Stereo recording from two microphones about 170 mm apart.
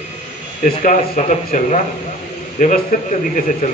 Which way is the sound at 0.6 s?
55° left (ahead or behind).